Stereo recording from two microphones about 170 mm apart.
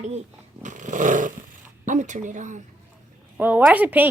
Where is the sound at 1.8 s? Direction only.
45° right (ahead or behind).